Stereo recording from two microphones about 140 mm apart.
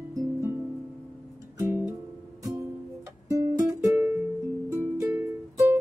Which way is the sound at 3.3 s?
20° right (ahead or behind).